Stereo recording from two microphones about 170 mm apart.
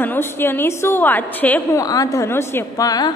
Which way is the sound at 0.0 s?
10° left (ahead or behind).